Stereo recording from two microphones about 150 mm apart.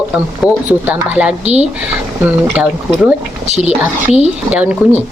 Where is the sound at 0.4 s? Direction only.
10° right (ahead or behind).